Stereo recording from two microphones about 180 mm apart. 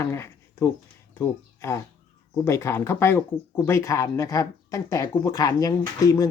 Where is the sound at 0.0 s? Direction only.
15° left (ahead or behind).